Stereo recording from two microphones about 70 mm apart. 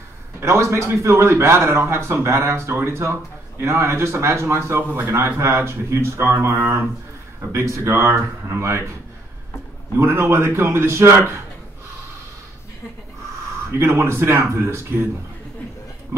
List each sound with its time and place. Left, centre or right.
0.4 s a man's voice: right
7.5 s speech: right
9.9 s speech: right
13.7 s speech: right